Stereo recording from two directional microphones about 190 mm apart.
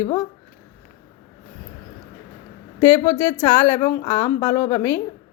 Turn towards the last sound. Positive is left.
turn(degrees=15)  # may be behind; listen again after turning